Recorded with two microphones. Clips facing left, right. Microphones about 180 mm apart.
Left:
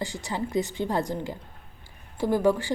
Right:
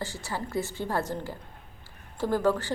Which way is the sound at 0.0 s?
15° left (ahead or behind).